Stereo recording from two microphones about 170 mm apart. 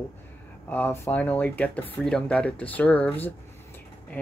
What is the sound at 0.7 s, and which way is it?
Speech, 10° left (ahead or behind).